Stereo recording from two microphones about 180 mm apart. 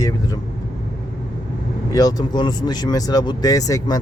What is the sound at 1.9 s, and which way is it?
Speech, 20° left (ahead or behind).